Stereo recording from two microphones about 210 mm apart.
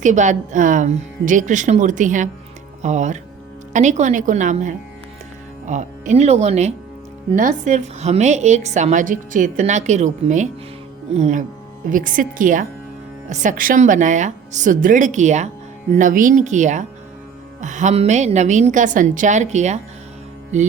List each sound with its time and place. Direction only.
0.0 s a woman's voice: 35° right (ahead or behind)